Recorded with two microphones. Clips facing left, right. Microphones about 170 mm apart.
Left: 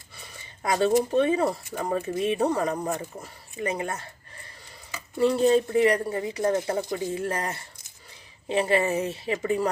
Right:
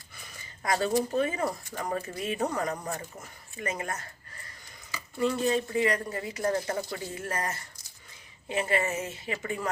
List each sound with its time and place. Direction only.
0.2 s speech: 25° left (ahead or behind)
5.1 s a woman's voice: 35° left (ahead or behind)